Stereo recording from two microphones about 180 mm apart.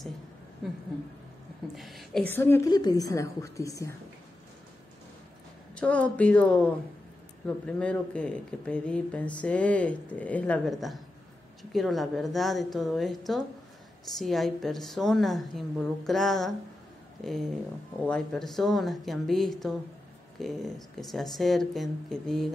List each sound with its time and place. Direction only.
1.8 s speech: centre (ahead or behind)
2.7 s a woman's voice: 20° left (ahead or behind)
5.8 s a woman's voice: 5° left (ahead or behind)